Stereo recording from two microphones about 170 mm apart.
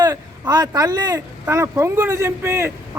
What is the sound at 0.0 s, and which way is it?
Speech, 25° right (ahead or behind).